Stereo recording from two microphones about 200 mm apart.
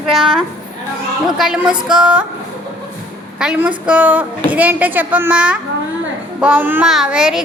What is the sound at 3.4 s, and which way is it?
A woman's voice, 5° right (ahead or behind).